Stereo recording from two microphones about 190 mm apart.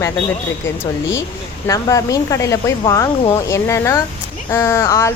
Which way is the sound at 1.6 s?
15° left (ahead or behind).